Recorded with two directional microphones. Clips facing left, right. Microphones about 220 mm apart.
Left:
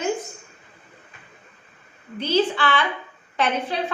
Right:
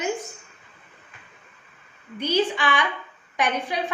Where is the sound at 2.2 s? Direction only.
15° right (ahead or behind).